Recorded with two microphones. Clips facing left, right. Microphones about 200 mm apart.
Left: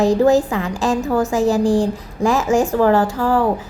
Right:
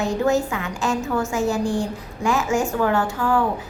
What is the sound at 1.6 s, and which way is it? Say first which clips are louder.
Speech: left 7 dB; 90° left.